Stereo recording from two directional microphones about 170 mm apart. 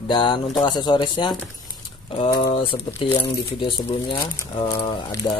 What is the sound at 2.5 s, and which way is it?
Speech, 30° left (ahead or behind).